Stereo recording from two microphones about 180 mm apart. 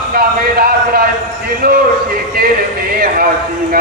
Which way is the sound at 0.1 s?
55° right (ahead or behind).